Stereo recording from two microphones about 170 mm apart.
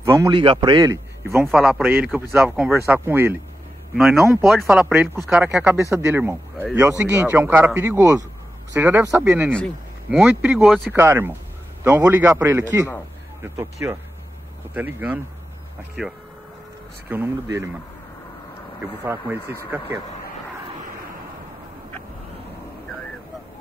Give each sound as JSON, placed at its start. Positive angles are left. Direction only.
{"t": 0.0, "sound": "a man's voice", "side_deg": -20}
{"t": 1.5, "sound": "speech", "side_deg": 0}
{"t": 3.9, "sound": "speech", "side_deg": 0}
{"t": 5.8, "sound": "speech", "side_deg": -15}
{"t": 11.0, "sound": "speech", "side_deg": -15}